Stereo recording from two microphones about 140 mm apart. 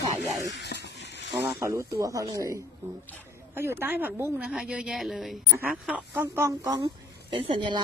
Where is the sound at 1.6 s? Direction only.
20° right (ahead or behind).